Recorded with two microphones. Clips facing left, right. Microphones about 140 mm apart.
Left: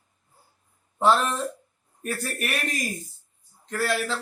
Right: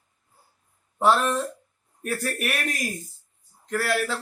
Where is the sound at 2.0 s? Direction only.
5° right (ahead or behind).